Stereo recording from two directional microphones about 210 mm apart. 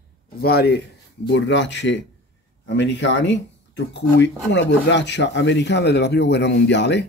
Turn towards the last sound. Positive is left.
turn(degrees=55)  # may be behind; listen again after turning